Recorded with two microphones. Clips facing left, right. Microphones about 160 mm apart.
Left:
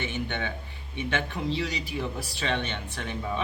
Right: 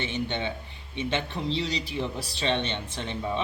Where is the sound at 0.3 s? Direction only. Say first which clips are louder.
Right 2 dB; 20° right (ahead or behind).